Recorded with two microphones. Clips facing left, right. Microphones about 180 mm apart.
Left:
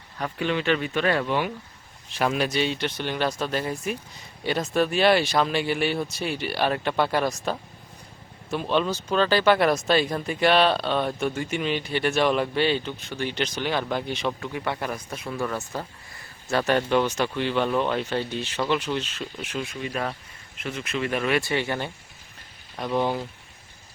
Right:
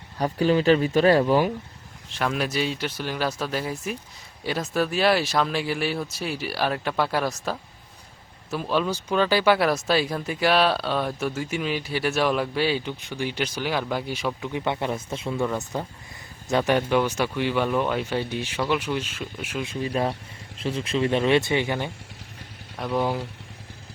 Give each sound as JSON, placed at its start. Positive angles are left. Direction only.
{"t": 0.2, "sound": "speech", "side_deg": -35}
{"t": 2.1, "sound": "speech", "side_deg": 5}
{"t": 14.5, "sound": "speech", "side_deg": -20}
{"t": 19.6, "sound": "speech", "side_deg": -30}
{"t": 22.8, "sound": "speech", "side_deg": 0}